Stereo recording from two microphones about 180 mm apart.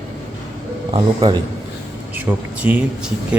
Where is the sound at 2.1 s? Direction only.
10° right (ahead or behind).